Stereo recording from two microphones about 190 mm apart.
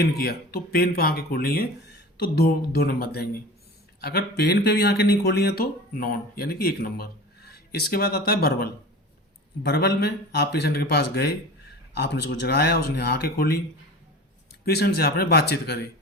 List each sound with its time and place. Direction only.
0.0 s speech: 55° left (ahead or behind)
14.6 s speech: 55° left (ahead or behind)